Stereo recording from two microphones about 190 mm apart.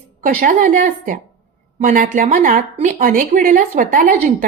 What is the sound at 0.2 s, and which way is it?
A woman's voice, 45° right (ahead or behind).